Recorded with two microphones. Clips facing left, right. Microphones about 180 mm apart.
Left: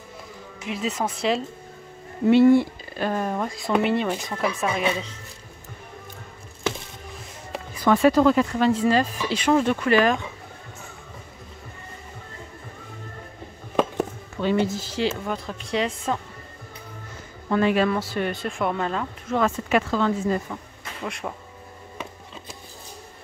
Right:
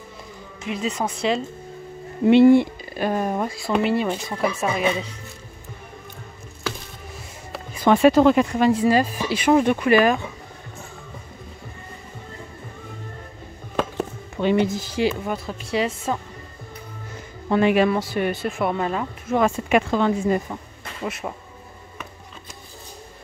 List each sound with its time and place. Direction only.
0.7 s speech: centre (ahead or behind)
2.2 s speech: 25° right (ahead or behind)
3.0 s speech: 15° right (ahead or behind)
7.7 s speech: 25° right (ahead or behind)
14.4 s speech: 15° right (ahead or behind)
17.5 s speech: 15° right (ahead or behind)